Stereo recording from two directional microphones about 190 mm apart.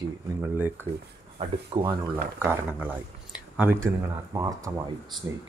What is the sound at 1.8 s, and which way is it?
Speech, 10° right (ahead or behind).